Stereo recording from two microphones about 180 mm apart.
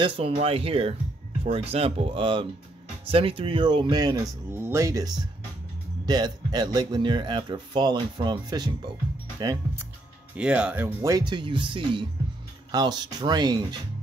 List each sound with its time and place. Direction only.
0.0 s speech: 30° right (ahead or behind)
10.3 s speech: 5° right (ahead or behind); by 13.7 s 25° right (ahead or behind)